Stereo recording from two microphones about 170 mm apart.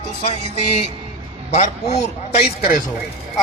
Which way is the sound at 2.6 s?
60° left (ahead or behind).